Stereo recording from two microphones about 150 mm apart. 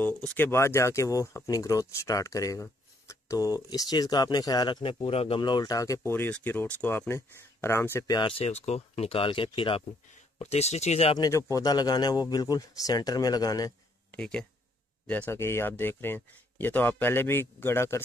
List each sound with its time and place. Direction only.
0.0 s speech: 10° left (ahead or behind)
8.1 s speech: 35° left (ahead or behind)
11.1 s speech: 20° left (ahead or behind)
14.1 s speech: 5° left (ahead or behind)